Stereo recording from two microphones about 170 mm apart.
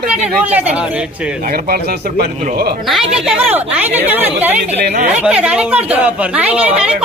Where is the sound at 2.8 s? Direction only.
Centre (ahead or behind).